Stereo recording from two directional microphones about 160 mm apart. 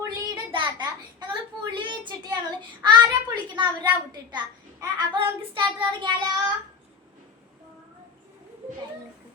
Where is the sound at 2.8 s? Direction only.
30° right (ahead or behind).